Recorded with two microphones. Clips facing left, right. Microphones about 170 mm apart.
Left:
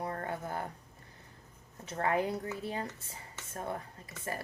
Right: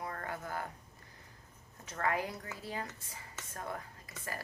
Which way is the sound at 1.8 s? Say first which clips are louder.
Left 4 dB; 30° left (ahead or behind).